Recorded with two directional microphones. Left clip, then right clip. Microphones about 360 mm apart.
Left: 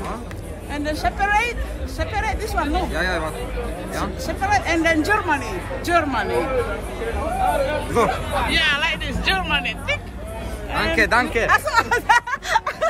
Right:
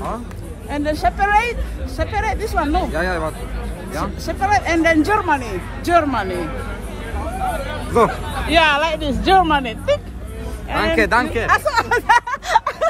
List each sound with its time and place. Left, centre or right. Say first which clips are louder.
0.7 s speech: right 5 dB; centre
2.9 s speech: right 2 dB; centre
4.3 s speech: right 3 dB; centre
7.4 s hubbub: left 4 dB; left
7.9 s speech: right 7 dB; centre
11.0 s speech: left 1 dB; centre
11.4 s a sound: right 1 dB; centre